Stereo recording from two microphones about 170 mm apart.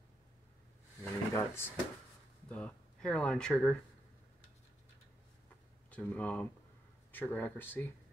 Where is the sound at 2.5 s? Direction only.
5° left (ahead or behind).